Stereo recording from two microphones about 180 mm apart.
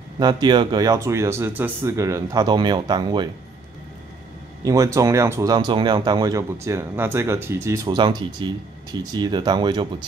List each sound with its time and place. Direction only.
0.2 s speech: 25° right (ahead or behind)
4.6 s speech: 20° right (ahead or behind)